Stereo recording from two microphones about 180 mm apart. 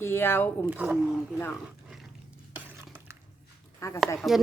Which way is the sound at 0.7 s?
10° right (ahead or behind).